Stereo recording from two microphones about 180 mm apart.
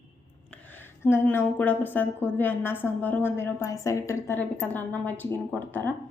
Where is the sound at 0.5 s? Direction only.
10° left (ahead or behind).